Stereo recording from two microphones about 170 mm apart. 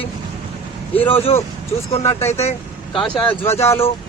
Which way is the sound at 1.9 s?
40° left (ahead or behind).